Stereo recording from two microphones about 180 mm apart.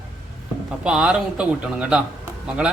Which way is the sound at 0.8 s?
5° right (ahead or behind).